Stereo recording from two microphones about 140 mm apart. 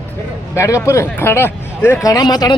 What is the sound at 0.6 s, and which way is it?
Speech, 20° left (ahead or behind).